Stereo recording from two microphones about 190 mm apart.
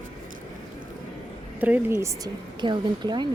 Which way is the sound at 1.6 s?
10° right (ahead or behind).